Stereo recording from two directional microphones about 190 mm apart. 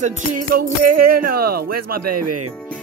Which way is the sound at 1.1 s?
50° right (ahead or behind).